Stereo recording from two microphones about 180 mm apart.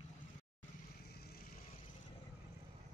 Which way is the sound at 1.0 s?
60° left (ahead or behind).